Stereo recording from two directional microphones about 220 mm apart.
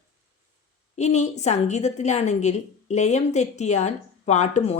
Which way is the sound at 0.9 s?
30° left (ahead or behind).